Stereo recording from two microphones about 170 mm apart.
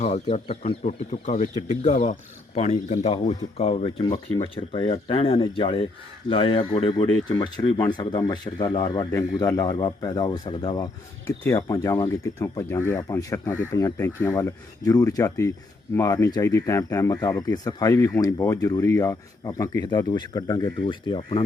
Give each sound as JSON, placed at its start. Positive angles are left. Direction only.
{"t": 0.0, "sound": "speech", "side_deg": 40}